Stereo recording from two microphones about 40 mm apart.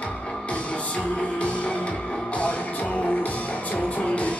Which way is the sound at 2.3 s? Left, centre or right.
Left.